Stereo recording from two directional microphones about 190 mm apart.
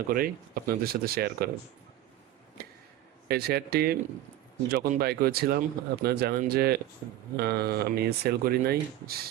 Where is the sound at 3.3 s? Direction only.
55° right (ahead or behind).